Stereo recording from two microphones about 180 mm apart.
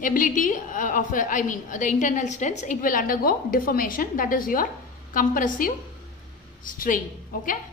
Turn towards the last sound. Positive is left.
turn(degrees=50)  # may be behind; listen again after turning